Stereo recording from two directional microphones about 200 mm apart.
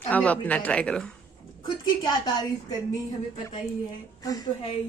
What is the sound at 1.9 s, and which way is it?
Speech, 20° left (ahead or behind).